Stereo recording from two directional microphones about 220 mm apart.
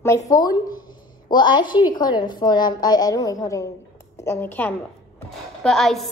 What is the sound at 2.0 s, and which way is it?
A woman's voice, 20° left (ahead or behind).